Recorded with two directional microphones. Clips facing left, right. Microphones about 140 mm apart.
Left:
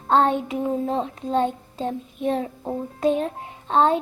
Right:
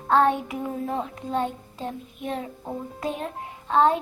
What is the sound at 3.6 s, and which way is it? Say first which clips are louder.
Music: left 1 dB; 25° left (ahead or behind).